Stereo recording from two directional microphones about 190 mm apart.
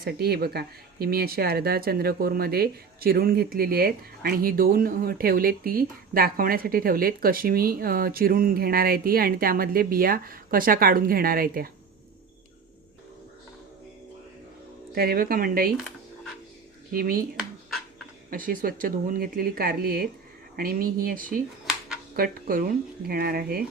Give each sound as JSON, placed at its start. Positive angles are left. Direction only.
{"t": 0.0, "sound": "speech", "side_deg": -55}
{"t": 14.9, "sound": "speech", "side_deg": -50}
{"t": 16.9, "sound": "speech", "side_deg": -50}
{"t": 18.3, "sound": "speech", "side_deg": -50}